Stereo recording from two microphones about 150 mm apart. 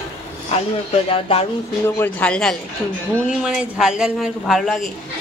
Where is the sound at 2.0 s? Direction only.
10° left (ahead or behind).